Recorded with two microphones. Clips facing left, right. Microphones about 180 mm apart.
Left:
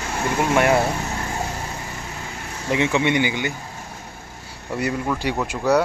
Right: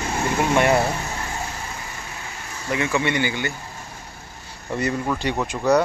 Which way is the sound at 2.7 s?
20° left (ahead or behind).